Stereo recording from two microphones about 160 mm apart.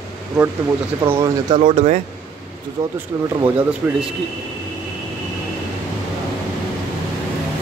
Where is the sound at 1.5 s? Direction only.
45° right (ahead or behind).